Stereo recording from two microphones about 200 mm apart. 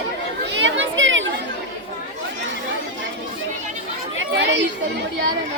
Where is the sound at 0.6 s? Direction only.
70° right (ahead or behind).